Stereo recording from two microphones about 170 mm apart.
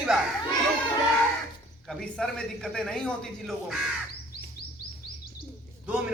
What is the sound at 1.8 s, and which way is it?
Speech, 5° left (ahead or behind).